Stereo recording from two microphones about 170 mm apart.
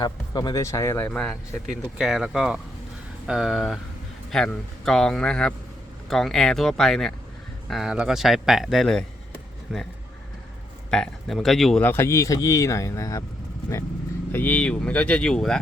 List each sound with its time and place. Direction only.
0.0 s speech: 25° left (ahead or behind); by 9.8 s centre (ahead or behind)
10.9 s speech: centre (ahead or behind); by 13.2 s 20° left (ahead or behind)
14.3 s speech: 10° left (ahead or behind)